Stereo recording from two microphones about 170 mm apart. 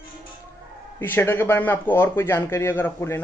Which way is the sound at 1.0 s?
10° left (ahead or behind).